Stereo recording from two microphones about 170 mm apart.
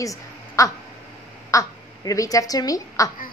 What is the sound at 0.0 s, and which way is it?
Speech, 20° left (ahead or behind).